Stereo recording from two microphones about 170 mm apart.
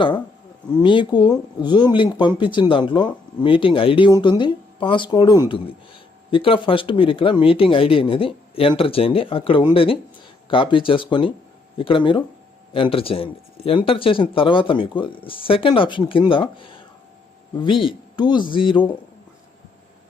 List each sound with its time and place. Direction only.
0.8 s speech: 30° left (ahead or behind)